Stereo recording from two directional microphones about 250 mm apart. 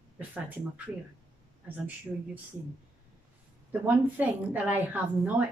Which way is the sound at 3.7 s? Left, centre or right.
Centre.